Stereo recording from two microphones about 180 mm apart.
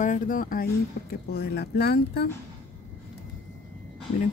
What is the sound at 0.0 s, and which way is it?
Speech, 45° left (ahead or behind).